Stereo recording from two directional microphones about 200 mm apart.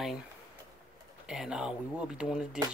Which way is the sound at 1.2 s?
5° right (ahead or behind).